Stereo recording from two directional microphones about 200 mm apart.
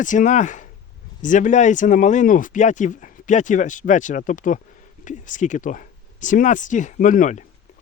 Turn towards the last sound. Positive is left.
turn(degrees=40)  # may be behind; listen again after turning